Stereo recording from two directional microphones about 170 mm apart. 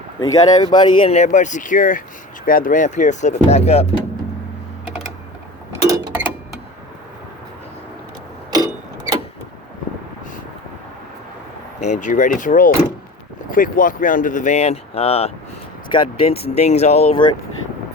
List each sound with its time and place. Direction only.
0.2 s speech: 25° left (ahead or behind)
5.7 s a sound: 20° right (ahead or behind)
8.5 s clock: 20° right (ahead or behind)
11.8 s speech: 45° left (ahead or behind)